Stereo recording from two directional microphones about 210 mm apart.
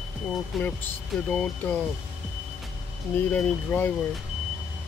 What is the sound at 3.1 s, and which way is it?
Speech, 10° left (ahead or behind).